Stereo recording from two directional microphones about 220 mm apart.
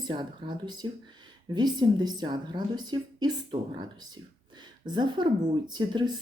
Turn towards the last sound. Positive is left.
turn(degrees=-20)  # may be behind; listen again after turning